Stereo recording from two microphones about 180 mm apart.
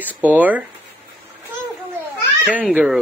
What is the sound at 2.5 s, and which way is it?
Speech, 10° right (ahead or behind).